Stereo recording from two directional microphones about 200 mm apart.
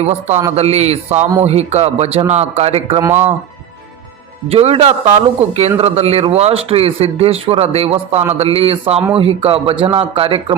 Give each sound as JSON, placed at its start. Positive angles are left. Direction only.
{"t": 0.0, "sound": "speech", "side_deg": -30}
{"t": 3.0, "sound": "speech", "side_deg": -10}
{"t": 4.4, "sound": "a man's voice", "side_deg": -30}